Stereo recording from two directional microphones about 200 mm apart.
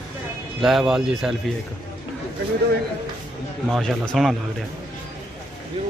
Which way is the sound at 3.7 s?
Centre (ahead or behind).